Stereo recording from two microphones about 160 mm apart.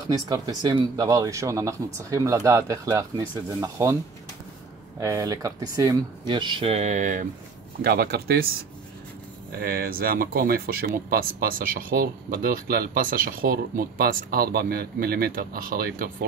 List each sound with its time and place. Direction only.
0.1 s speech: 25° right (ahead or behind)
5.0 s speech: 20° right (ahead or behind); by 7.2 s 55° right (ahead or behind)
7.8 s speech: 75° right (ahead or behind)
9.5 s speech: 70° right (ahead or behind)